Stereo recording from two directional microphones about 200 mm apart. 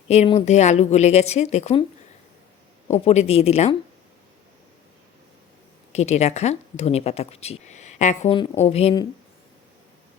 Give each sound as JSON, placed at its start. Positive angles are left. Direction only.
{"t": 0.1, "sound": "speech", "side_deg": 30}
{"t": 3.0, "sound": "speech", "side_deg": 30}
{"t": 5.9, "sound": "speech", "side_deg": 35}